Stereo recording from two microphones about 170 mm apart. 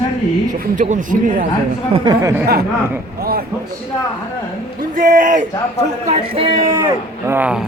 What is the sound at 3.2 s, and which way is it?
Speech, 60° right (ahead or behind).